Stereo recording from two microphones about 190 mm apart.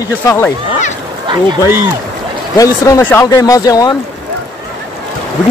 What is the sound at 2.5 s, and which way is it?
Speech, 15° left (ahead or behind).